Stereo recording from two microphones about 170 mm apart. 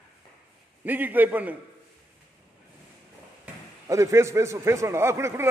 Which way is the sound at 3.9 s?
15° right (ahead or behind).